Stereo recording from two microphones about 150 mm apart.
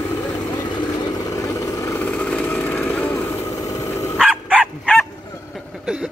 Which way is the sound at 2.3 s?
10° left (ahead or behind).